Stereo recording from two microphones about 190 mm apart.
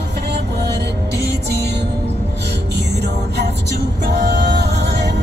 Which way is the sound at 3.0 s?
60° right (ahead or behind).